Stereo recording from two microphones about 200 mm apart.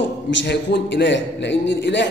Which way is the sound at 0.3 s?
60° left (ahead or behind).